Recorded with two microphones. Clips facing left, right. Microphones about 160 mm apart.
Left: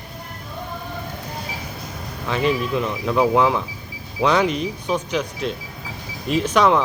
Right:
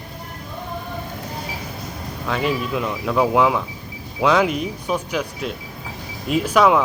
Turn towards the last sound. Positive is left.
turn(degrees=-5)  # may be behind; listen again after turning